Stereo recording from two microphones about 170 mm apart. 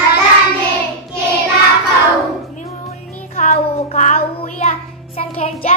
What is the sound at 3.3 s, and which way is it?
Child singing, 45° left (ahead or behind).